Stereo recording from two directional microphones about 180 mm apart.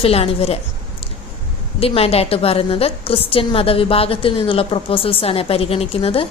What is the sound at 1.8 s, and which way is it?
A woman's voice, 30° left (ahead or behind).